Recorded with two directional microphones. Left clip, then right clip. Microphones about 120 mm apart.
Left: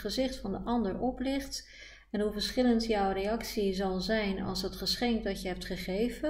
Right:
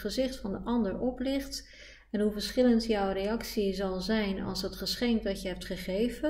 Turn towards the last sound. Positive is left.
turn(degrees=-45)  # may be behind; listen again after turning